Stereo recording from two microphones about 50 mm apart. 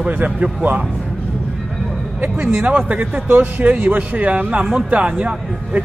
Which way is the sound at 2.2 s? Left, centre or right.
Right.